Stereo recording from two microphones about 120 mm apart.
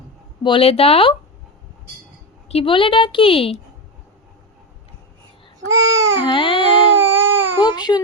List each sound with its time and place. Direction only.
0.4 s a woman's voice: 50° left (ahead or behind)
2.5 s a woman's voice: 50° left (ahead or behind)
5.5 s babbling: 25° right (ahead or behind)
6.2 s baby cry: 45° left (ahead or behind)
7.0 s baby cry: 20° right (ahead or behind)
7.6 s baby cry: 35° left (ahead or behind)